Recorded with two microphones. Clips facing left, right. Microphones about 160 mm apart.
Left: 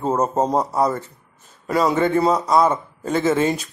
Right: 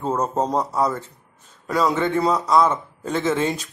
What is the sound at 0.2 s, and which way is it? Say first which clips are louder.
A man's voice: left 3 dB; 5° left (ahead or behind).